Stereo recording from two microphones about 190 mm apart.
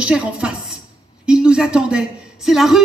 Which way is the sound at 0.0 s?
5° right (ahead or behind).